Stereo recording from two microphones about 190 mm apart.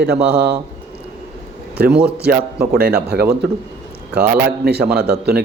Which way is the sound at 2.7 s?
55° right (ahead or behind).